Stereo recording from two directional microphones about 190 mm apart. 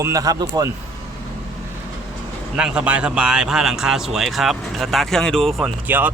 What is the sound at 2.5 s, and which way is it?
Speech, 5° right (ahead or behind).